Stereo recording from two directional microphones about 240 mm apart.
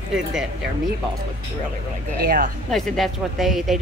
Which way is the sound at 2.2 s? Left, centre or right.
Right.